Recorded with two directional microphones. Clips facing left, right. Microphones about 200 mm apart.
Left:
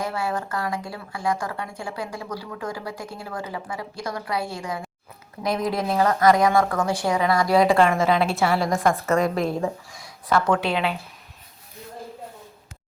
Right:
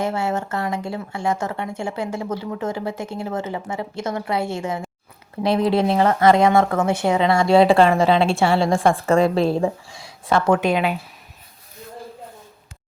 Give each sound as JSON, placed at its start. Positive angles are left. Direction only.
{"t": 0.0, "sound": "speech", "side_deg": -25}
{"t": 10.6, "sound": "speech", "side_deg": -15}